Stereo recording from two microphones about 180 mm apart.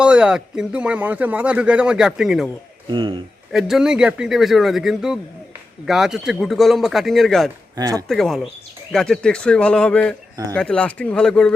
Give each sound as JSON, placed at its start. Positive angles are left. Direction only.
{"t": 0.0, "sound": "speech", "side_deg": -5}
{"t": 2.9, "sound": "a man's voice", "side_deg": -30}
{"t": 3.5, "sound": "speech", "side_deg": 0}
{"t": 7.8, "sound": "a man's voice", "side_deg": -20}
{"t": 8.0, "sound": "speech", "side_deg": 0}